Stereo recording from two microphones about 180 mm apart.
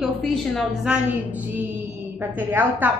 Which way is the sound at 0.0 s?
Centre (ahead or behind).